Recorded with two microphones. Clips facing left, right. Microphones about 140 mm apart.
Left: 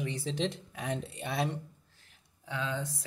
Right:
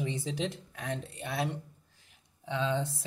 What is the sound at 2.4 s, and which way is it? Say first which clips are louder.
Speech: right 4 dB; 25° right (ahead or behind).